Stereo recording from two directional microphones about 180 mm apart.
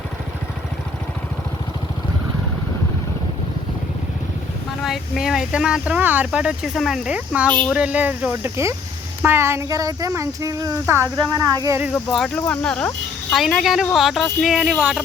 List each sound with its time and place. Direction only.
4.8 s speech: centre (ahead or behind)
11.9 s speech: 5° left (ahead or behind)